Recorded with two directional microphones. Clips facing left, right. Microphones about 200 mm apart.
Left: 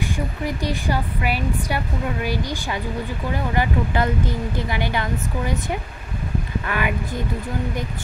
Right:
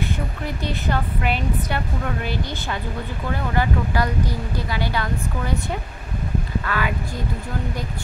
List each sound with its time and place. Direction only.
0.6 s a woman's voice: 10° left (ahead or behind)